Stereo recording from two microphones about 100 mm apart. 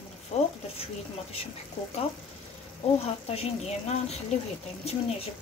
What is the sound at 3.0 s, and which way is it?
Speech, 90° left.